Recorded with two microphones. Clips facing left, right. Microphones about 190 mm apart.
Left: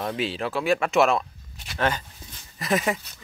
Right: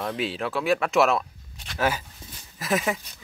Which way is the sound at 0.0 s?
Centre (ahead or behind).